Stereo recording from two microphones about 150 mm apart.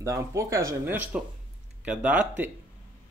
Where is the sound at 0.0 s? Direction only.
20° right (ahead or behind).